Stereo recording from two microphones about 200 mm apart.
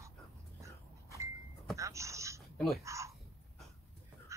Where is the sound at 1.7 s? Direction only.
15° right (ahead or behind).